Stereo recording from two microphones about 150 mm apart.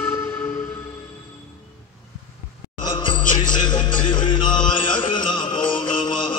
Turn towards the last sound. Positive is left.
turn(degrees=30)  # may be behind; listen again after turning